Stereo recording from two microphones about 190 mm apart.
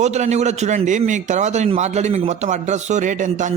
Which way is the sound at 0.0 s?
35° right (ahead or behind).